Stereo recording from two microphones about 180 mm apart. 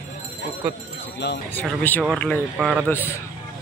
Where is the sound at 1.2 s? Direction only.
70° left (ahead or behind).